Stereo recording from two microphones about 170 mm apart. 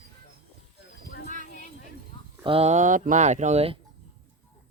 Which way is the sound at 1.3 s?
45° left (ahead or behind).